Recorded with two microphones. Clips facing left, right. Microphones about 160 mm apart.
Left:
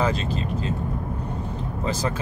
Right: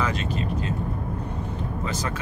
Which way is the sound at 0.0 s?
30° left (ahead or behind).